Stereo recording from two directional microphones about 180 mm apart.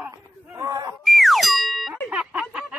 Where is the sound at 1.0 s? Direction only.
Centre (ahead or behind).